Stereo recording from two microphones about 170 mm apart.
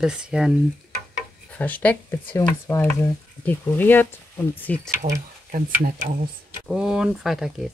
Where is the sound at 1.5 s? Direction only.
10° left (ahead or behind).